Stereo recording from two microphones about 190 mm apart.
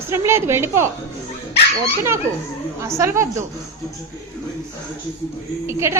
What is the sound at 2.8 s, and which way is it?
Speech, 15° right (ahead or behind).